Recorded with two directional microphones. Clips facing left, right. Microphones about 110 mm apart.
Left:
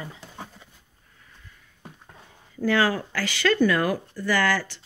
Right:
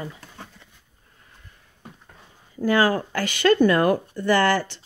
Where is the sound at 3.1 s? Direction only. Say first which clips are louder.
Right 4 dB; 20° right (ahead or behind).